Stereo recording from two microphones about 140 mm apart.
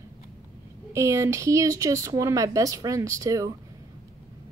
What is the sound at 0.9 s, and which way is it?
Speech, 20° right (ahead or behind).